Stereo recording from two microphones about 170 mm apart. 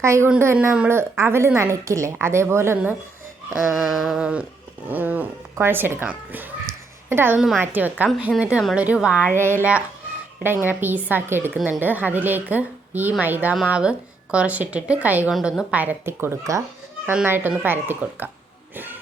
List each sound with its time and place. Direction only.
0.0 s a woman's voice: 15° right (ahead or behind)
3.5 s a sound: centre (ahead or behind)
4.9 s a woman's voice: 10° right (ahead or behind)
18.7 s music: 10° right (ahead or behind)